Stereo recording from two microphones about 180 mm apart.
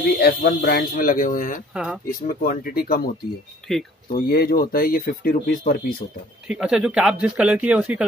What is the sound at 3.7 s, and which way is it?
Speech, centre (ahead or behind).